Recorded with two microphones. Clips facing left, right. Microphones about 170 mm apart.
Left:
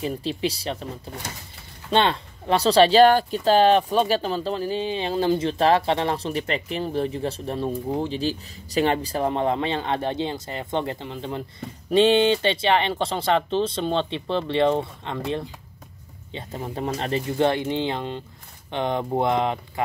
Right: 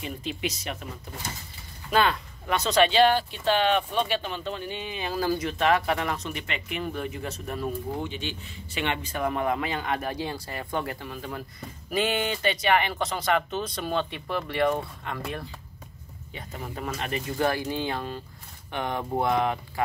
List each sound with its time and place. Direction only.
0.0 s speech: 35° left (ahead or behind)